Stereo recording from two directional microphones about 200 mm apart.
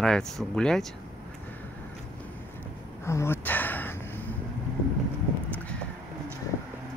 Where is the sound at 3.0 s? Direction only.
15° left (ahead or behind).